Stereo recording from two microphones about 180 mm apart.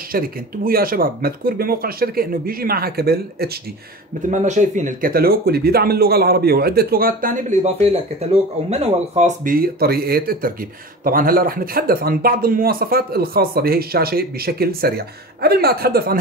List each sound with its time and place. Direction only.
0.1 s speech: 55° right (ahead or behind)
4.3 s speech: 45° right (ahead or behind)